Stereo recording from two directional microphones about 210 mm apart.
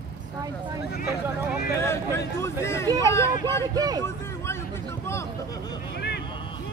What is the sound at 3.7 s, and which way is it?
Speech, 20° right (ahead or behind).